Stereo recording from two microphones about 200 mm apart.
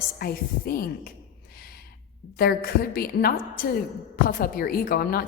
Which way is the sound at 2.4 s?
50° left (ahead or behind).